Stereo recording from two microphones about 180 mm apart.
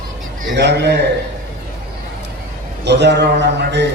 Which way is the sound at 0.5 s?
70° right (ahead or behind).